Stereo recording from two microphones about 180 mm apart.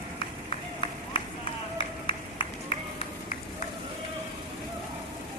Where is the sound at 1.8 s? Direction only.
25° left (ahead or behind).